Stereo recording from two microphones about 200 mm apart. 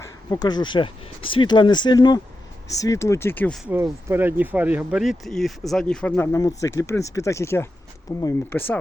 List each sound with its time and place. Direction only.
0.3 s speech: 20° left (ahead or behind)
4.1 s speech: 10° right (ahead or behind); by 8.8 s 10° left (ahead or behind)